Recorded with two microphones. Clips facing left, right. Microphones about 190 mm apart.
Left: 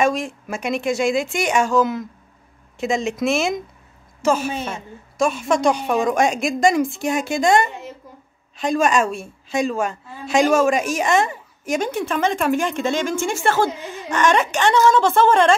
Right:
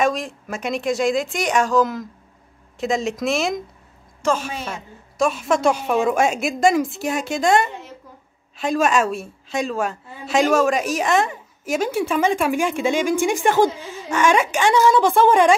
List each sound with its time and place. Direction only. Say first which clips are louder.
0.0 s a woman's voice: left 1 dB; centre (ahead or behind)